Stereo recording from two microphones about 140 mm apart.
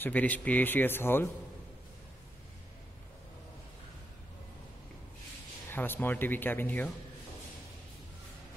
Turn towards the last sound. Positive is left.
turn(degrees=10)  # may be behind; listen again after turning